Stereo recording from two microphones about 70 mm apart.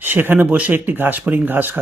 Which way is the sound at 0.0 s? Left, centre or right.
Right.